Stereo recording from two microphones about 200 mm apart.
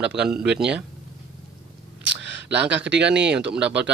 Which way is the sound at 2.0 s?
65° right (ahead or behind).